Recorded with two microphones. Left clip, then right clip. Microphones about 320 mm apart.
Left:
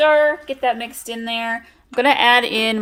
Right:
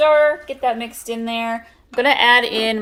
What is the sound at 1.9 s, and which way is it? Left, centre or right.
Speech, left.